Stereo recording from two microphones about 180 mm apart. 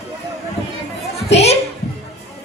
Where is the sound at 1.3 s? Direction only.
35° left (ahead or behind).